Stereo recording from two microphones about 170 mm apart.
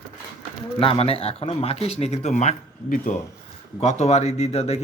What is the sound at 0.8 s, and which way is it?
Speech, 35° left (ahead or behind).